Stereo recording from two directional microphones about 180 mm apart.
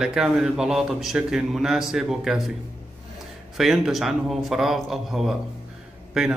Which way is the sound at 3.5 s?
Centre (ahead or behind).